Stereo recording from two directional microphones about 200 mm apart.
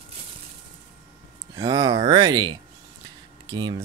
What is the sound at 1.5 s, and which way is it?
Speech, 20° right (ahead or behind).